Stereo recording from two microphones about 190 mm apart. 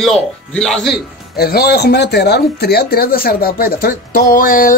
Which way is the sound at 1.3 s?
55° left (ahead or behind).